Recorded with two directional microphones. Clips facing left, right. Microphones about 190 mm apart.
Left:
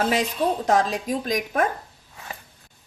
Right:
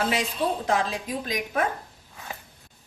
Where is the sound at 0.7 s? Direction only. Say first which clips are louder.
Left 5 dB; 40° left (ahead or behind).